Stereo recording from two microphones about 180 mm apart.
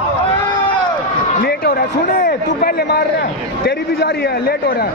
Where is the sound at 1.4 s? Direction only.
60° left (ahead or behind).